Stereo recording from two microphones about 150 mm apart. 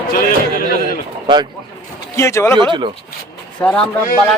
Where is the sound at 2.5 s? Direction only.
30° right (ahead or behind).